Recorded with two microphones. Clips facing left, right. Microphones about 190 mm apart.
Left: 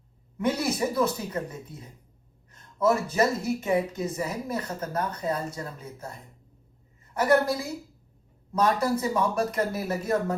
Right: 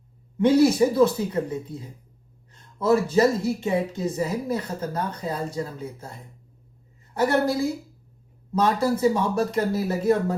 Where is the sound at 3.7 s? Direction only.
30° right (ahead or behind).